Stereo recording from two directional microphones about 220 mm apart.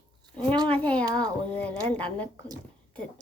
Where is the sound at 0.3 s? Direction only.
20° right (ahead or behind).